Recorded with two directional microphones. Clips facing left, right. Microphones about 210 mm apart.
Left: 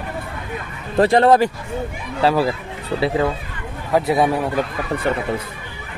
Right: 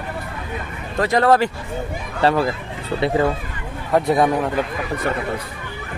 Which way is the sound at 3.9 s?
5° left (ahead or behind).